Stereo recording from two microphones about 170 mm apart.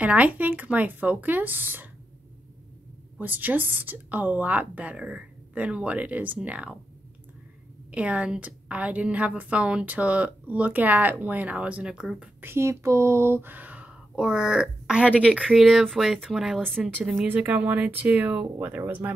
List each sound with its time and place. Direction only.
0.0 s a woman's voice: 10° right (ahead or behind)
3.2 s a woman's voice: 10° right (ahead or behind)
7.9 s a woman's voice: 5° right (ahead or behind)